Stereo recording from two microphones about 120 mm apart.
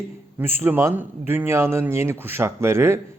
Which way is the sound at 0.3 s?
20° right (ahead or behind).